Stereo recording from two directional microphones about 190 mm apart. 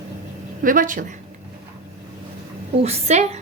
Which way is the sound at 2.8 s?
35° right (ahead or behind).